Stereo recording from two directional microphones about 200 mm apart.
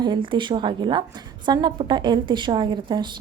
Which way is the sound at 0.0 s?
25° right (ahead or behind).